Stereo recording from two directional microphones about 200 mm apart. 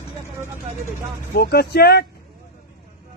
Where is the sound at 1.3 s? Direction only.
55° left (ahead or behind).